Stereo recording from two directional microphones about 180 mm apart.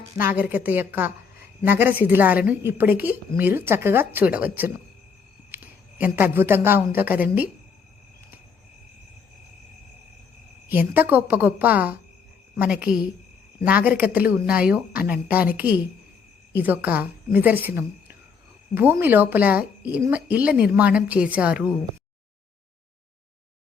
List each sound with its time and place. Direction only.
0.2 s a woman's voice: 10° right (ahead or behind)
5.5 s a sound: 10° right (ahead or behind)
6.0 s a woman's voice: 10° right (ahead or behind)
10.7 s a woman's voice: 10° right (ahead or behind)